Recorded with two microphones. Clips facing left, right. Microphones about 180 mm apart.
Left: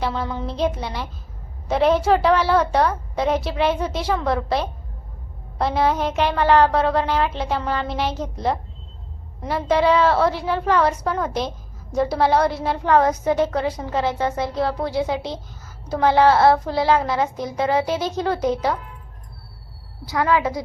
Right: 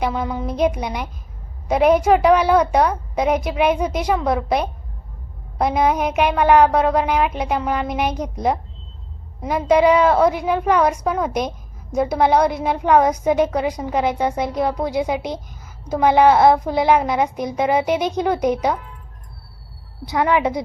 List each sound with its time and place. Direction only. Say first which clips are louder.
0.0 s a woman's voice: right 3 dB; 10° right (ahead or behind)
20.1 s a woman's voice: right 2 dB; 20° right (ahead or behind)